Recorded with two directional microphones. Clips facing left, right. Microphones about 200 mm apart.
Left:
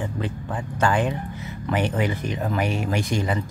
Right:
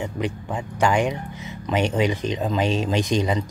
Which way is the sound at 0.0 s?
20° right (ahead or behind).